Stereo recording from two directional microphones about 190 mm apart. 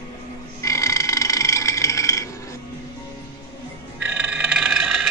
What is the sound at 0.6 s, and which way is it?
Burping, 15° left (ahead or behind).